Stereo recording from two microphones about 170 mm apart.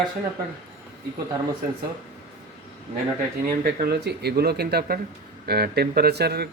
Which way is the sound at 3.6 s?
65° right (ahead or behind).